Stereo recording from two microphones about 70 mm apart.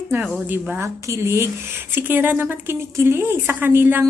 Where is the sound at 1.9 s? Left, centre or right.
Right.